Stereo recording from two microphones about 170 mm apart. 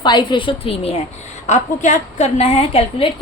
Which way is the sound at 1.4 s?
45° left (ahead or behind).